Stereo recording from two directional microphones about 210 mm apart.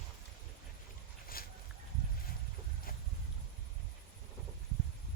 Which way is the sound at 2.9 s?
45° left (ahead or behind).